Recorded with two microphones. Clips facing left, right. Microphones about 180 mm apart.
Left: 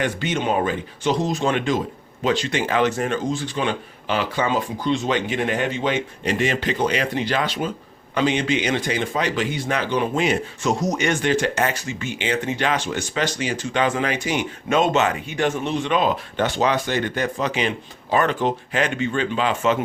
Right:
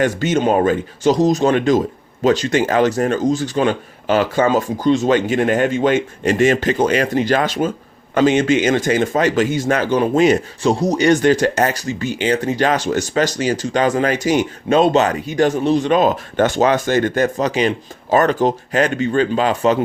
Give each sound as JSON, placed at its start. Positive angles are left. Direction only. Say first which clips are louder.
{"t": 0.0, "sound": "speech", "louder": "right 7 dB", "side_deg": -40}